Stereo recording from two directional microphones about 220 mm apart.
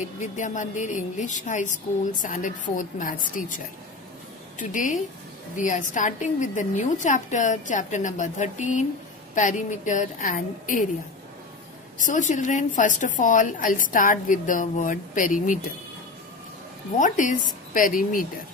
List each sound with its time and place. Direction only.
0.2 s a woman's voice: 35° left (ahead or behind)
12.0 s a woman's voice: 35° left (ahead or behind)
16.9 s a woman's voice: 35° left (ahead or behind)